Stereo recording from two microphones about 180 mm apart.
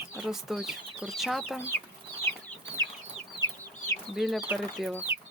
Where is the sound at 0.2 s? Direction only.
Centre (ahead or behind).